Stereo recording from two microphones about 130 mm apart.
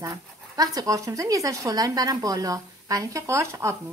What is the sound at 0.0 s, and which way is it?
Speech, 30° right (ahead or behind).